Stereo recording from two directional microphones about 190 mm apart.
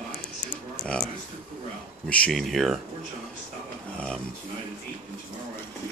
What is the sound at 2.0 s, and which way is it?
Speech, 5° left (ahead or behind).